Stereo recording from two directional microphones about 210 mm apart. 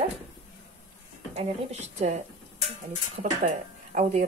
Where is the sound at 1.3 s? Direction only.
30° right (ahead or behind).